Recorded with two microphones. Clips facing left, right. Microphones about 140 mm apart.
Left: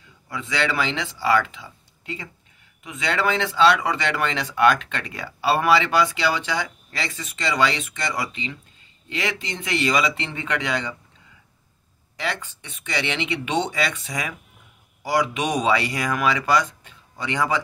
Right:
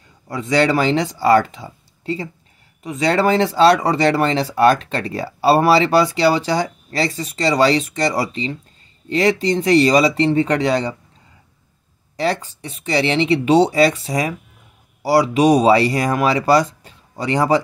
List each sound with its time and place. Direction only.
0.3 s speech: 40° right (ahead or behind)
12.2 s speech: 35° right (ahead or behind)